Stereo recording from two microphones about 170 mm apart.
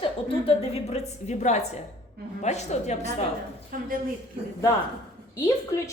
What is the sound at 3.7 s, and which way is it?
Speech, 55° right (ahead or behind).